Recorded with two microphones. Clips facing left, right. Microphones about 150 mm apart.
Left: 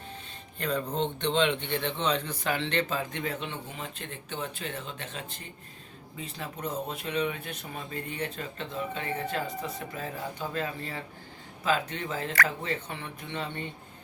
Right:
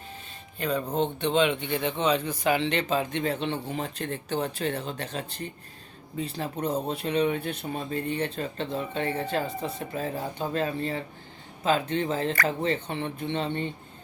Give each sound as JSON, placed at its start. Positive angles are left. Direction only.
{"t": 0.6, "sound": "a man's voice", "side_deg": -5}